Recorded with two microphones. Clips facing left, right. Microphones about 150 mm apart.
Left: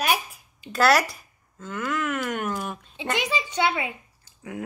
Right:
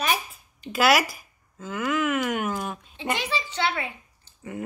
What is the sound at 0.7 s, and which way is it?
Speech, 5° right (ahead or behind).